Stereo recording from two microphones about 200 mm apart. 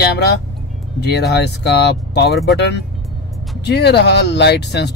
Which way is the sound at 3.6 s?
55° left (ahead or behind).